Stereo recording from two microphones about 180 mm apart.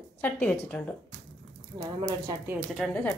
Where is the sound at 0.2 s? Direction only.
10° left (ahead or behind).